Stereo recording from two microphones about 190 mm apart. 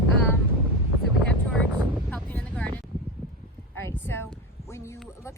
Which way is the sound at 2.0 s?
10° left (ahead or behind).